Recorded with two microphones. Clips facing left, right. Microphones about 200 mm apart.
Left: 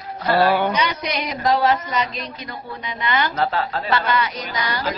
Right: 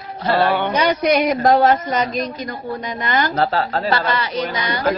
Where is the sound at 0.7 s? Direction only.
45° right (ahead or behind).